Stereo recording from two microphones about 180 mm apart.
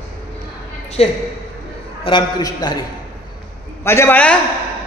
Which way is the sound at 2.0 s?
25° left (ahead or behind).